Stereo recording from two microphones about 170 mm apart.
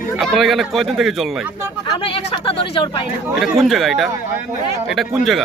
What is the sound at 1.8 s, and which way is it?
Speech, 30° left (ahead or behind).